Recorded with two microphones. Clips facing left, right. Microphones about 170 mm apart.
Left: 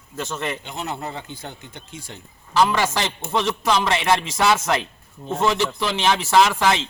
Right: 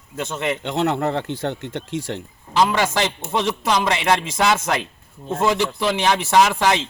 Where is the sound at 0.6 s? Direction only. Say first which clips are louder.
Right 9 dB; 80° right.